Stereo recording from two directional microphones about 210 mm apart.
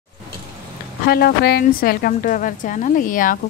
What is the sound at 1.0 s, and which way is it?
A woman's voice, 50° left (ahead or behind).